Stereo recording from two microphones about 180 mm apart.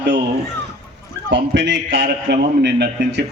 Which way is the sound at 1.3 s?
80° right.